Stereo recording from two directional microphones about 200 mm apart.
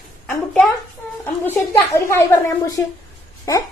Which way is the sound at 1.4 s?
15° left (ahead or behind).